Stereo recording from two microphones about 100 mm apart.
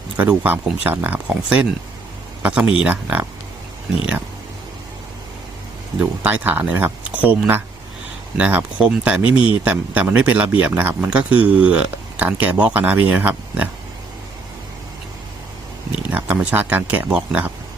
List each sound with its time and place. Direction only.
0.2 s speech: 15° right (ahead or behind)
6.0 s speech: 15° right (ahead or behind)
16.0 s speech: 15° right (ahead or behind)